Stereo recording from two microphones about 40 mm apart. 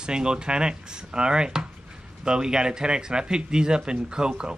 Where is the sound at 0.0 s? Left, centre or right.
Right.